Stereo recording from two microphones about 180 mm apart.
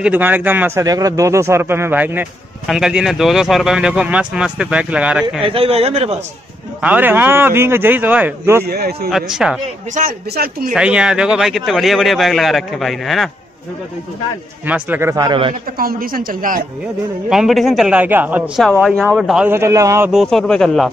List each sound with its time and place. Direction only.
0.0 s a man's voice: 10° right (ahead or behind)
5.4 s speech: 30° right (ahead or behind)
6.8 s a man's voice: 10° right (ahead or behind)
8.6 s speech: 60° right (ahead or behind)
9.1 s speech: 5° right (ahead or behind)
9.9 s a woman's voice: 55° right (ahead or behind)
10.7 s speech: 5° right (ahead or behind)
14.7 s a man's voice: 10° right (ahead or behind)
15.8 s a woman's voice: 55° right (ahead or behind)
17.3 s speech: centre (ahead or behind)
20.1 s speech: centre (ahead or behind)